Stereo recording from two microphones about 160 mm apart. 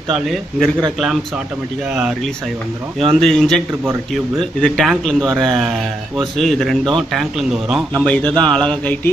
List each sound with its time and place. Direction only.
0.1 s speech: centre (ahead or behind)
2.0 s speech: centre (ahead or behind)
8.0 s speech: 10° left (ahead or behind)